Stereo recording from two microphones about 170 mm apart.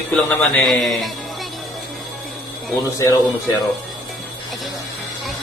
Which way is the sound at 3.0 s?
20° left (ahead or behind).